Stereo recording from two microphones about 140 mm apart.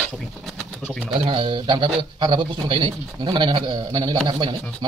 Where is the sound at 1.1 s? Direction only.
40° right (ahead or behind).